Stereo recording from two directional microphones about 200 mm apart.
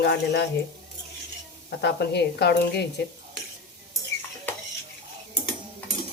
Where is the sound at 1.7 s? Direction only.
55° left (ahead or behind).